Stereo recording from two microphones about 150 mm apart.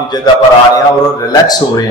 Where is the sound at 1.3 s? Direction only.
25° left (ahead or behind).